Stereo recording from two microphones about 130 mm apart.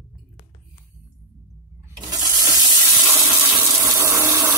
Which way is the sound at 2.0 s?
30° right (ahead or behind).